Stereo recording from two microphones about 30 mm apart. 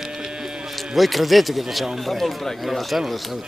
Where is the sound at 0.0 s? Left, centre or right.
Centre.